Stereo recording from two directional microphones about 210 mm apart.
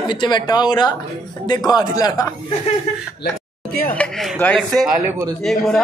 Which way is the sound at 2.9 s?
30° left (ahead or behind).